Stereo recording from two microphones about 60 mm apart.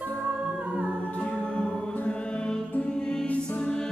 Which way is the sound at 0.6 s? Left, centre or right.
Right.